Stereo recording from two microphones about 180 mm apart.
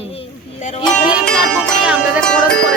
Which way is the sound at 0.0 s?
35° left (ahead or behind).